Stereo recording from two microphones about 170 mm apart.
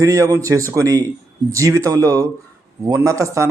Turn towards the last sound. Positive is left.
turn(degrees=-20)  # may be behind; listen again after turning